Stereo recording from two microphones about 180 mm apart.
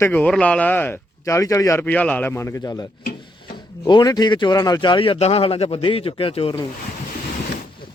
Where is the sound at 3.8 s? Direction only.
25° left (ahead or behind).